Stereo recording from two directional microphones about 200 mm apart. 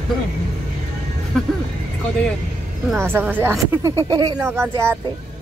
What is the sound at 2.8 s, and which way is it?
Speech, 10° right (ahead or behind).